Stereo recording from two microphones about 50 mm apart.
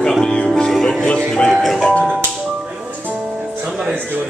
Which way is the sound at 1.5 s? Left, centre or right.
Centre.